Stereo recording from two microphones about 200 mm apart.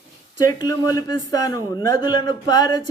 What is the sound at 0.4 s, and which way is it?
Speech, 15° left (ahead or behind).